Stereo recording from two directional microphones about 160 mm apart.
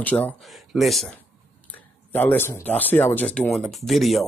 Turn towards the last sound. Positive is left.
turn(degrees=0)  # may be behind; listen again after turning